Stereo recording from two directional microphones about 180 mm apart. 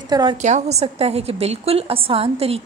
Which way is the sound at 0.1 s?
25° right (ahead or behind).